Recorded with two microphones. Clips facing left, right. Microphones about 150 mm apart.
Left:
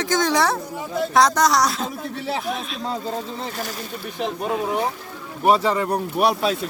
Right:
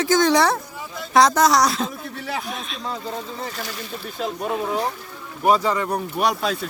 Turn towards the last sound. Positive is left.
turn(degrees=5)  # may be behind; listen again after turning